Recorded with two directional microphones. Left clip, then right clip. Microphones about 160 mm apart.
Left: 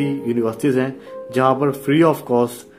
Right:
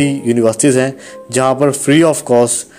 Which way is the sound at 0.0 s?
30° right (ahead or behind).